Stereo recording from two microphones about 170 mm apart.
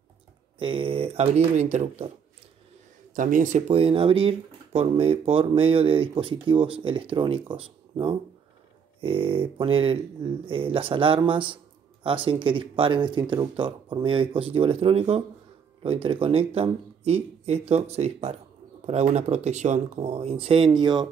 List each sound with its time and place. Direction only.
0.6 s speech: 30° right (ahead or behind)
3.2 s speech: 50° right (ahead or behind); by 21.1 s 25° right (ahead or behind)